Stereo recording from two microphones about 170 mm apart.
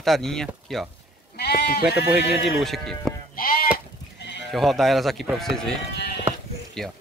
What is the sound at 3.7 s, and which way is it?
Goat, 90° left.